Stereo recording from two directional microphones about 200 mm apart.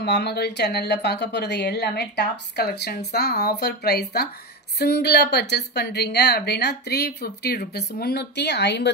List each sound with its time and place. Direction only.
0.0 s a woman's voice: 55° left (ahead or behind)